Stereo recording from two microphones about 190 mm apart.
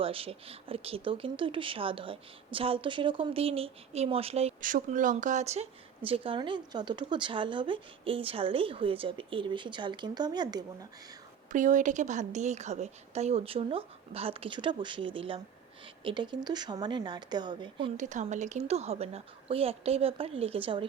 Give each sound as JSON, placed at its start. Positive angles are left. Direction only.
{"t": 0.0, "sound": "speech", "side_deg": -30}
{"t": 11.5, "sound": "a woman's voice", "side_deg": -40}
{"t": 17.9, "sound": "a woman's voice", "side_deg": -40}